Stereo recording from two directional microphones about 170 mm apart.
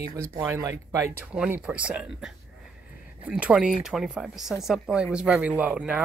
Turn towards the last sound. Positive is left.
turn(degrees=-5)  # may be behind; listen again after turning